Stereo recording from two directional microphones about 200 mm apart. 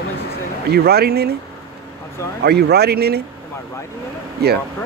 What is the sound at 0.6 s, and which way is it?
Speech, 55° right (ahead or behind).